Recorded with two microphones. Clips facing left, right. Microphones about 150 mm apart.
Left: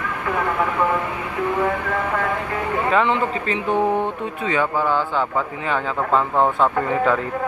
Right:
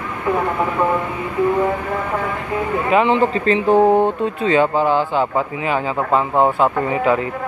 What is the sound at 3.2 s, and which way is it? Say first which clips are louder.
Speech: right 6 dB; 35° right (ahead or behind).